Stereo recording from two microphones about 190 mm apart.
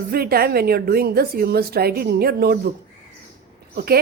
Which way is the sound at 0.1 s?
55° right (ahead or behind).